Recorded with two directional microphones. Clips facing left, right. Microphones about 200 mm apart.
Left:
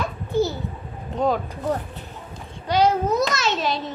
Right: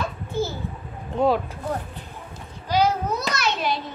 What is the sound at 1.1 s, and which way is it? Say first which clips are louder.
Speech: right 2 dB; 20° left (ahead or behind).